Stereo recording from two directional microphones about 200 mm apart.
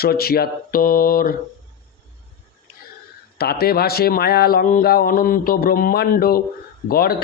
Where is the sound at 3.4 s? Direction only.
50° left (ahead or behind).